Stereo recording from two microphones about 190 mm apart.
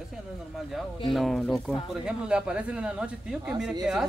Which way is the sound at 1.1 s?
Centre (ahead or behind).